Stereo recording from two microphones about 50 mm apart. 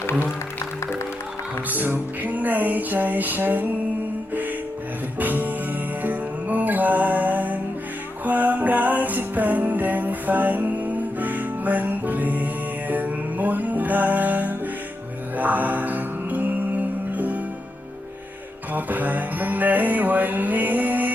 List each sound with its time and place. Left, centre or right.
1.7 s music: right
5.2 s music: right
18.7 s music: right